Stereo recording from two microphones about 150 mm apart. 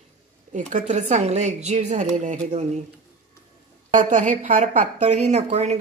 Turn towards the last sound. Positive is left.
turn(degrees=-45)  # may be behind; listen again after turning